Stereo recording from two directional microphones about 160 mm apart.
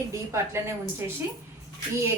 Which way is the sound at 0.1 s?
20° right (ahead or behind).